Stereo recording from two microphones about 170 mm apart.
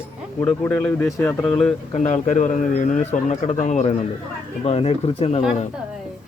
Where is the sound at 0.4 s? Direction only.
10° left (ahead or behind).